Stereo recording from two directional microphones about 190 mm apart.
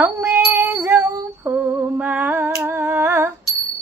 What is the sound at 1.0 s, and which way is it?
Female singing, 10° right (ahead or behind).